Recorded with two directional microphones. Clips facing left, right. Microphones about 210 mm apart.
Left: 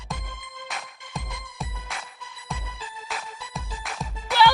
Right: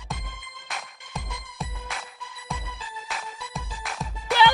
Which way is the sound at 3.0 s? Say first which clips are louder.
Even; centre (ahead or behind).